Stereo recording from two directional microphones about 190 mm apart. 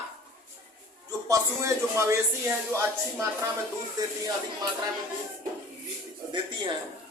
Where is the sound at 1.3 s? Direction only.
15° right (ahead or behind).